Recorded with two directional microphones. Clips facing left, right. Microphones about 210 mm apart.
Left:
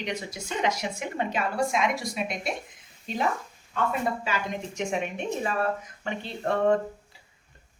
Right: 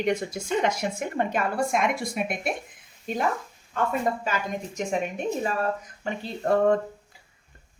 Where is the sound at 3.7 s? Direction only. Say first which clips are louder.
Right 2 dB; 45° right (ahead or behind).